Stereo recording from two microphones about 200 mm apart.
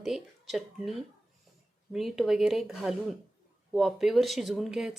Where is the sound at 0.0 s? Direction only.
Centre (ahead or behind).